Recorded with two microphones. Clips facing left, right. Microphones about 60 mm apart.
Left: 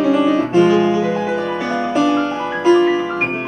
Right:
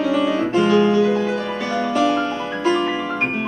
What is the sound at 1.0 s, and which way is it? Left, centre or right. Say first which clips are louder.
Music: left 1 dB; centre.